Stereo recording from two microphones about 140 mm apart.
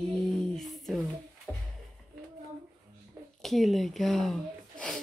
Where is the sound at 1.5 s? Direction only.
15° left (ahead or behind).